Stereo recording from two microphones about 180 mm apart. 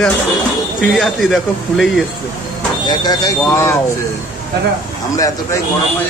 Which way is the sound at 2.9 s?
20° left (ahead or behind).